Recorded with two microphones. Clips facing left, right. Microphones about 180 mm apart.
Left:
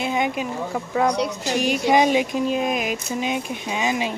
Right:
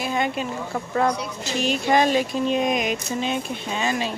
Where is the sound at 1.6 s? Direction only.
15° left (ahead or behind).